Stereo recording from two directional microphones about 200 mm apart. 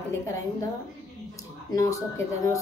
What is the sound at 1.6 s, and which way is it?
Speech, 15° left (ahead or behind).